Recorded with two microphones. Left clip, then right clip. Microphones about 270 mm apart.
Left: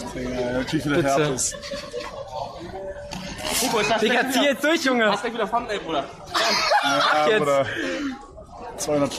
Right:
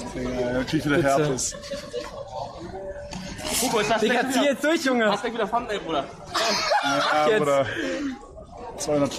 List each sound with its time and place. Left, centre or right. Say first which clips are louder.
0.2 s speech: even; centre
3.4 s speech: left 1 dB; centre